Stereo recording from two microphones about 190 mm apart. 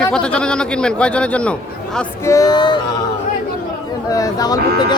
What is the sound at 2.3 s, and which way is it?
Speech, 20° left (ahead or behind).